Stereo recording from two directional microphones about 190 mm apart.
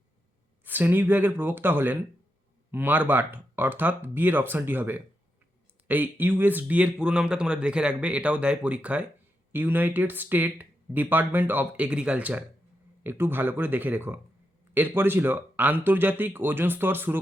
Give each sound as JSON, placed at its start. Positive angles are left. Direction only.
{"t": 0.6, "sound": "speech", "side_deg": -10}